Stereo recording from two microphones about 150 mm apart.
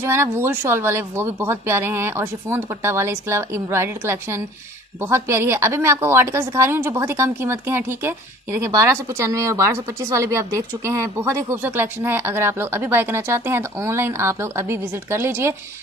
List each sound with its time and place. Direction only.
0.0 s a woman's voice: 15° right (ahead or behind)